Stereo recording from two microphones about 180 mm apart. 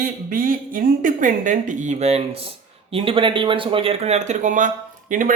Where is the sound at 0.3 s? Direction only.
50° right (ahead or behind).